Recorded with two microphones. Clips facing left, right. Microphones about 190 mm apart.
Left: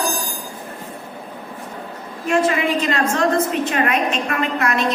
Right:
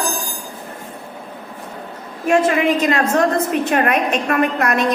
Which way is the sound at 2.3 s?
45° right (ahead or behind).